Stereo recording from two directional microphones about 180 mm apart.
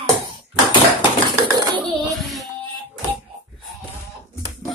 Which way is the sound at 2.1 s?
Centre (ahead or behind).